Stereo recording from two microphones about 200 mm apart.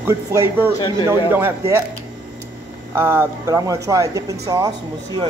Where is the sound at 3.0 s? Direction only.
10° right (ahead or behind).